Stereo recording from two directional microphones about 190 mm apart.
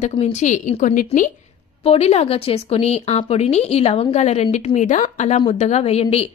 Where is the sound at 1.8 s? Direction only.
35° left (ahead or behind).